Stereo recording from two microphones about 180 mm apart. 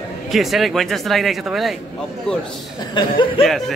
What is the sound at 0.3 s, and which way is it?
Speech, centre (ahead or behind).